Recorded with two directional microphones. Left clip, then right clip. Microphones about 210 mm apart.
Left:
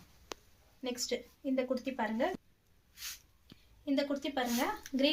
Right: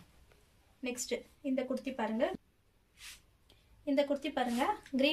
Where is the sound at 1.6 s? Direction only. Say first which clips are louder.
Left 3 dB; 30° right (ahead or behind).